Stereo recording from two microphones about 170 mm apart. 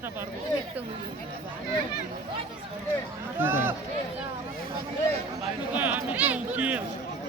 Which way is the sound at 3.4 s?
10° right (ahead or behind).